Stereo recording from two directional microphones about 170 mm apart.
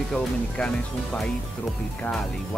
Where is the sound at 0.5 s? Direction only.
5° left (ahead or behind).